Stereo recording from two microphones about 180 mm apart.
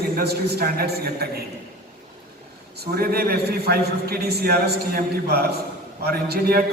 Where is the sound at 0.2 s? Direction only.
60° right (ahead or behind).